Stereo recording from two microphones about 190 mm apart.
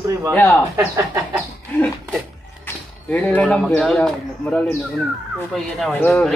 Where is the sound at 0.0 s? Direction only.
15° right (ahead or behind).